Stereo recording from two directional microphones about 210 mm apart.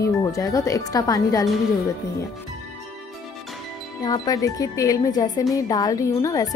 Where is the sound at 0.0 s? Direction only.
15° left (ahead or behind).